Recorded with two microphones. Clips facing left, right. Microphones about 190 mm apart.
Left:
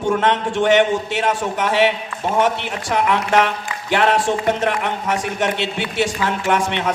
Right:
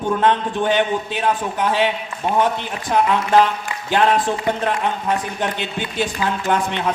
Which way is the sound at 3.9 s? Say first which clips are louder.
Even; 80° left.